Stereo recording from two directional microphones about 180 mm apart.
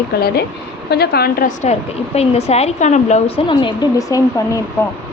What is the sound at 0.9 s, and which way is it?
Speech, 60° left (ahead or behind).